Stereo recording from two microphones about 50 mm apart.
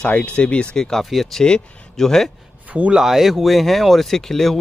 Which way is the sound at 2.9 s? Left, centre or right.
Centre.